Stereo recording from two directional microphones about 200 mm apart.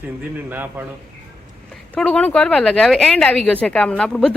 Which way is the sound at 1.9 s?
5° left (ahead or behind).